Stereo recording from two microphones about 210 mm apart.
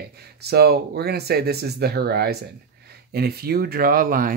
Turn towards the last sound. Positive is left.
turn(degrees=-40)  # may be behind; listen again after turning